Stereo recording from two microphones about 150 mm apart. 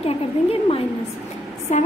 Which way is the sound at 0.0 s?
40° left (ahead or behind).